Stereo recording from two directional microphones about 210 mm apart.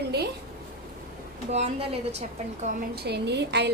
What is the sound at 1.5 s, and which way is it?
Speech, 30° right (ahead or behind).